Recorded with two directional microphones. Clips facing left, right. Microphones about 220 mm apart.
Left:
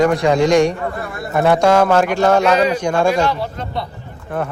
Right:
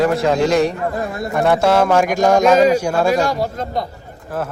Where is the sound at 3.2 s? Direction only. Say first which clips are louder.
Right 1 dB; 45° right (ahead or behind).